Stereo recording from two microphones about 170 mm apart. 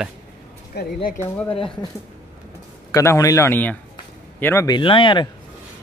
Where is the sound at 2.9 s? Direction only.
20° left (ahead or behind).